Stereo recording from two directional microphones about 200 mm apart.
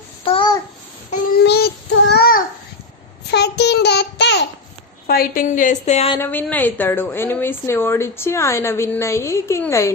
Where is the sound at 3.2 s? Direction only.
55° left (ahead or behind).